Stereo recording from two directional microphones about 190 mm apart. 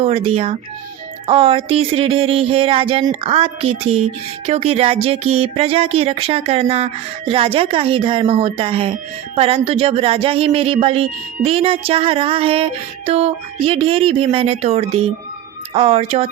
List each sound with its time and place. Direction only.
0.0 s speech: 30° right (ahead or behind)